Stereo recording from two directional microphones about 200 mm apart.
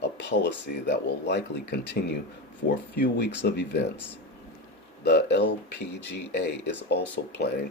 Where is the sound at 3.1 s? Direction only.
55° left (ahead or behind).